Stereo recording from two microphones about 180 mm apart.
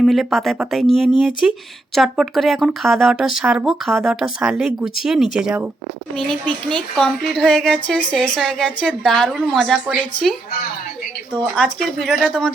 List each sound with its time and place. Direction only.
0.0 s speech: centre (ahead or behind)
11.5 s speech: 5° left (ahead or behind)